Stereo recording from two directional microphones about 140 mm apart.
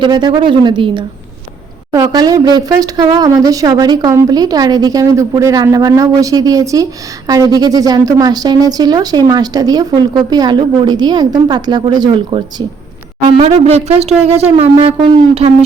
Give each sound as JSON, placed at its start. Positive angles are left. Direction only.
{"t": 0.0, "sound": "a woman's voice", "side_deg": -30}
{"t": 13.2, "sound": "speech", "side_deg": -45}